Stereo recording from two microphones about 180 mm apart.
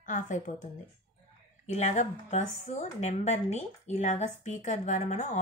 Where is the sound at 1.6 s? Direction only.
40° left (ahead or behind).